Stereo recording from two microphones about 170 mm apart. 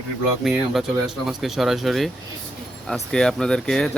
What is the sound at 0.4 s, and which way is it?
Speech, centre (ahead or behind).